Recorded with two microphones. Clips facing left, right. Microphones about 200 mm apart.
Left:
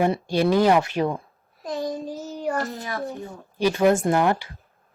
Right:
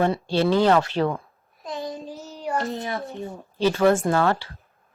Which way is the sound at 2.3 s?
45° left (ahead or behind).